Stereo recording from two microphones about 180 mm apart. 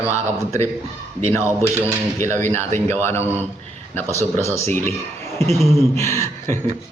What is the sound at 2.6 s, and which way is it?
Speech, 40° right (ahead or behind).